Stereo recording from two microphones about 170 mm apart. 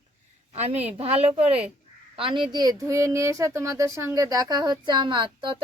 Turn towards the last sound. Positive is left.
turn(degrees=-30)  # may be behind; listen again after turning